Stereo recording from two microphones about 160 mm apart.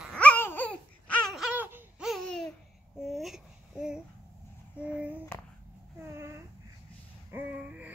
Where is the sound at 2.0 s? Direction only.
Centre (ahead or behind).